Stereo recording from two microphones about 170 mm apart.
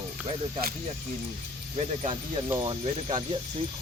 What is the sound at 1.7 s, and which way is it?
Speech, 35° right (ahead or behind).